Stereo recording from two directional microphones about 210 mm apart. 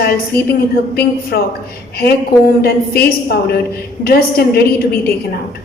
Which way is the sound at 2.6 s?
45° left (ahead or behind).